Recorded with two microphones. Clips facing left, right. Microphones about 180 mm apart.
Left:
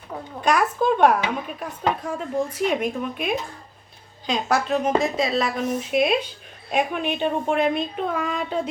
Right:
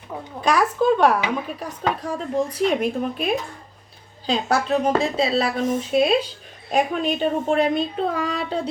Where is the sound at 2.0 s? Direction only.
35° right (ahead or behind).